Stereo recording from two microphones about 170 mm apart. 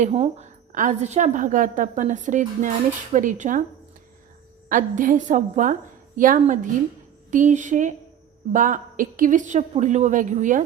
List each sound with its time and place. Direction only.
0.0 s a woman's voice: 40° right (ahead or behind)
4.7 s a woman's voice: 50° right (ahead or behind)